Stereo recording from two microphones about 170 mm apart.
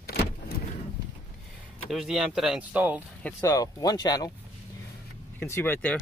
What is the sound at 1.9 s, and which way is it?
Speech, centre (ahead or behind).